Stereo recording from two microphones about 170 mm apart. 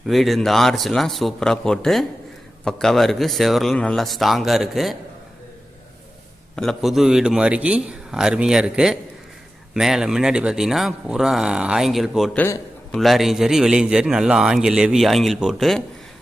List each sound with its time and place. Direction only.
0.1 s a man's voice: centre (ahead or behind)
6.6 s a man's voice: centre (ahead or behind)
12.4 s a sound: 10° left (ahead or behind)
13.0 s a man's voice: centre (ahead or behind)